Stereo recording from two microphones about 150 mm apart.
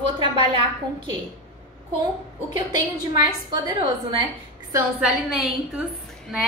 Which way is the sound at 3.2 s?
25° right (ahead or behind).